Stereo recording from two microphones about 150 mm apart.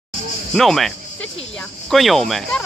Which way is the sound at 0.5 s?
Centre (ahead or behind).